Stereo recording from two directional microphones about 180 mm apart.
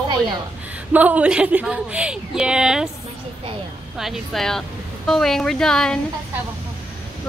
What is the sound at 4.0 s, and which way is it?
A woman's voice, centre (ahead or behind).